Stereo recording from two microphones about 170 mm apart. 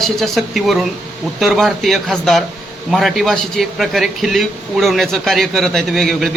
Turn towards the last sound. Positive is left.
turn(degrees=0)  # may be behind; listen again after turning